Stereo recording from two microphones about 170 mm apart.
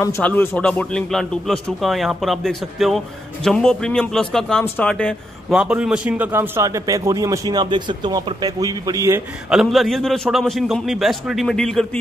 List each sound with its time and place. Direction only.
0.0 s speech: 15° left (ahead or behind)
5.5 s a man's voice: 5° right (ahead or behind)
9.5 s speech: centre (ahead or behind)